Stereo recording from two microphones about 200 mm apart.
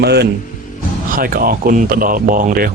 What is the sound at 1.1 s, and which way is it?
Speech, 45° right (ahead or behind).